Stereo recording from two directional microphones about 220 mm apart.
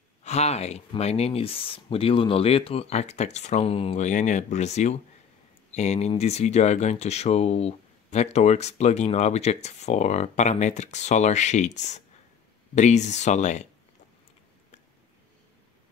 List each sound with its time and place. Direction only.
0.2 s speech: 30° left (ahead or behind)